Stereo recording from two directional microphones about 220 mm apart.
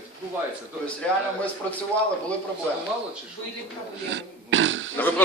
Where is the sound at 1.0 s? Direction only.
5° left (ahead or behind).